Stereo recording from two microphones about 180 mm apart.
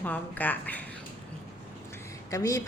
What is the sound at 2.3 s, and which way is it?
Speech, 20° left (ahead or behind).